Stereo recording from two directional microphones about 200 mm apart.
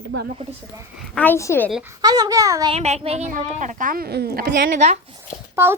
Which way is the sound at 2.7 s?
30° right (ahead or behind).